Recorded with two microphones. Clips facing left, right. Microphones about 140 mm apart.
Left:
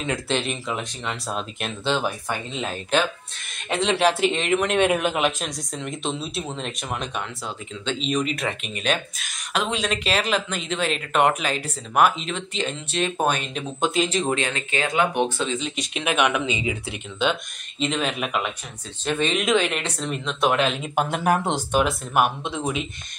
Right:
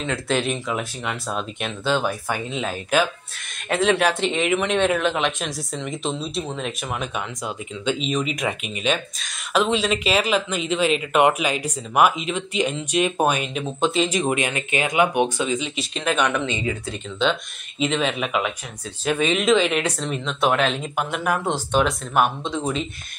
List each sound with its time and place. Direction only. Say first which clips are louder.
0.3 s speech: right 6 dB; centre (ahead or behind)
4.7 s speech: even; 15° left (ahead or behind)
14.0 s speech: right 1 dB; 15° right (ahead or behind)
15.9 s speech: even; 10° left (ahead or behind)
17.7 s speech: right 2 dB; 5° right (ahead or behind)
20.9 s speech: left 2 dB; 30° left (ahead or behind)
21.7 s speech: right 1 dB; 5° left (ahead or behind)